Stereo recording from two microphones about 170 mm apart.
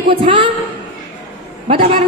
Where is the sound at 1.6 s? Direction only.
35° right (ahead or behind).